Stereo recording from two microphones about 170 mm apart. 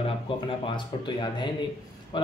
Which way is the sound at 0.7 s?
25° left (ahead or behind).